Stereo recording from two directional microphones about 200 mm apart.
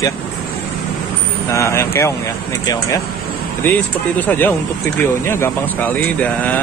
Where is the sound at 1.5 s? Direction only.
15° left (ahead or behind).